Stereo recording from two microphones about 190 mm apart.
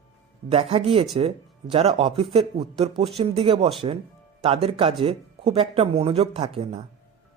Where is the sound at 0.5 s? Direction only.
30° right (ahead or behind).